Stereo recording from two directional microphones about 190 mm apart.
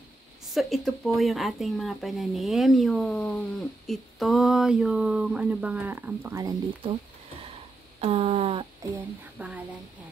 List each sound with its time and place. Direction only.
0.5 s speech: centre (ahead or behind)
8.0 s a sound: 30° right (ahead or behind)
9.4 s speech: 10° right (ahead or behind)